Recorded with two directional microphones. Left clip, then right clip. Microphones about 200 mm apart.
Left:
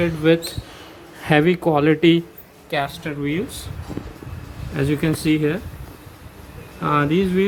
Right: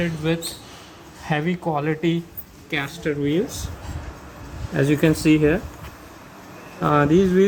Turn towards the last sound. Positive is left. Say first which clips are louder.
# right 2 dB
turn(degrees=15)  # may be behind; listen again after turning